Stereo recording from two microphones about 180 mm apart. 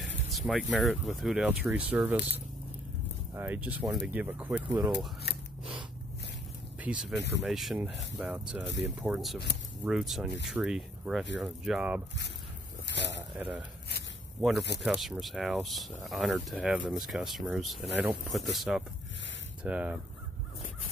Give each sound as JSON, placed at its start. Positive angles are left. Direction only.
{"t": 0.0, "sound": "speech", "side_deg": 0}
{"t": 6.8, "sound": "speech", "side_deg": -5}
{"t": 7.2, "sound": "speech", "side_deg": 75}
{"t": 7.4, "sound": "speech", "side_deg": 0}
{"t": 12.8, "sound": "a sound", "side_deg": 75}
{"t": 13.4, "sound": "speech", "side_deg": -10}
{"t": 14.8, "sound": "speech", "side_deg": 0}